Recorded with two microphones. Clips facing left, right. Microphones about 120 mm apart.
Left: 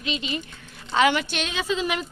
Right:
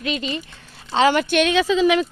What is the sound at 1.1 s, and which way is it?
Speech, 60° right (ahead or behind).